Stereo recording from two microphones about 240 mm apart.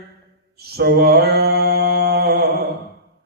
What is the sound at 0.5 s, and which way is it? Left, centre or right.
Mantra, right.